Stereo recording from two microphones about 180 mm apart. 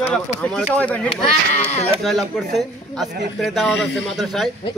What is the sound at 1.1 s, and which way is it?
Speech, 35° left (ahead or behind).